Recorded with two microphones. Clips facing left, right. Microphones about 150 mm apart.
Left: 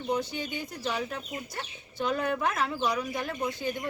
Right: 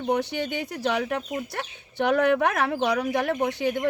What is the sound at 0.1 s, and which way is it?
Speech, 70° right (ahead or behind).